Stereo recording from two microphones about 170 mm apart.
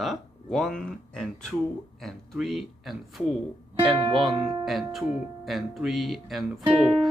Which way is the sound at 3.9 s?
30° right (ahead or behind).